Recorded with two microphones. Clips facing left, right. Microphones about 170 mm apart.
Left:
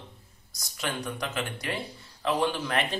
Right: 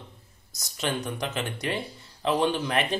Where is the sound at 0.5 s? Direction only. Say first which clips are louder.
Right 4 dB; 25° right (ahead or behind).